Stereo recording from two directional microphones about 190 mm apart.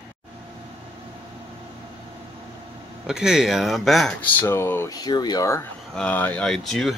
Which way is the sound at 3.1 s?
Centre (ahead or behind).